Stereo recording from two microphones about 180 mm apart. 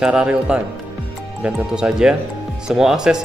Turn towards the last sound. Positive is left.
turn(degrees=-5)  # may be behind; listen again after turning